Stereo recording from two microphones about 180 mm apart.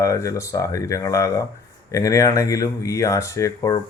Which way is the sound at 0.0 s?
15° left (ahead or behind).